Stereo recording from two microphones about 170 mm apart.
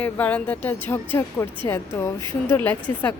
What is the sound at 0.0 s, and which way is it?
Speech, 10° left (ahead or behind).